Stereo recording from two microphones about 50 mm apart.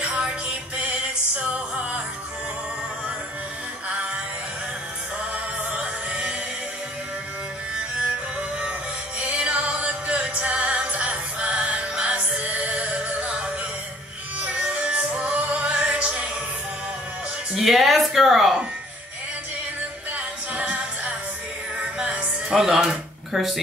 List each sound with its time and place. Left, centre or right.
1.4 s music: right
5.3 s music: right
9.2 s music: right
17.6 s a sound: centre
20.1 s a capella: right
22.5 s a sound: centre